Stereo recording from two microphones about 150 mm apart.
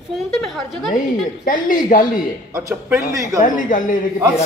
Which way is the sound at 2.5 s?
20° right (ahead or behind).